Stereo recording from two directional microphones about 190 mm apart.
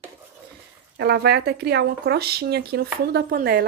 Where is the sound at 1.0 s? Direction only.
60° right (ahead or behind).